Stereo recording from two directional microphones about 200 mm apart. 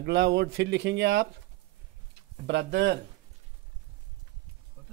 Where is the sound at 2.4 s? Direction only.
60° right (ahead or behind).